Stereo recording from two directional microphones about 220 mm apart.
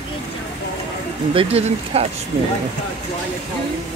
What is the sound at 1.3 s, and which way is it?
Speech, 25° right (ahead or behind).